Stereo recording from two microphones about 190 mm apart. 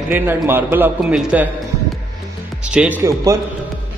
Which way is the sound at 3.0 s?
15° right (ahead or behind).